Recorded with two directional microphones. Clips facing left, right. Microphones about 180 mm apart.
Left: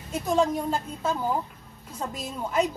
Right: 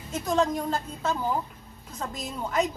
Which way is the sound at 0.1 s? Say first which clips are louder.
Left 1 dB; 10° left (ahead or behind).